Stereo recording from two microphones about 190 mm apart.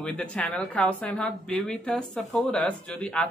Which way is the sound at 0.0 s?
5° left (ahead or behind).